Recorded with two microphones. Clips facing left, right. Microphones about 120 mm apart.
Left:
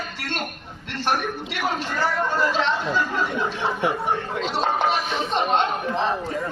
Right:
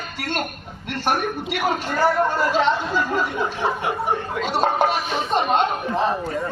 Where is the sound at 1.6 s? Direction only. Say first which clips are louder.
Right 4 dB; 10° right (ahead or behind).